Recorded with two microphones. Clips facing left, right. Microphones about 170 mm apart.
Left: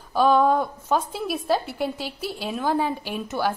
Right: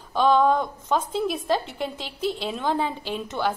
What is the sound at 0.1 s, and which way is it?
A woman's voice, 10° left (ahead or behind).